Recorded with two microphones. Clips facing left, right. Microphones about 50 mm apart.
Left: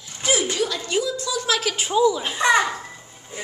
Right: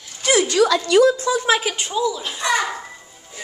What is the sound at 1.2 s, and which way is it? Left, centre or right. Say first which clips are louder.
Speech: right 5 dB; right.